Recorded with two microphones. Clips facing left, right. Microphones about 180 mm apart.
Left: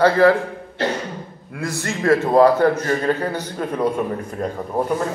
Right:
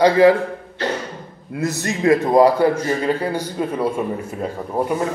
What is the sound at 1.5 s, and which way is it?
A man's voice, 20° right (ahead or behind).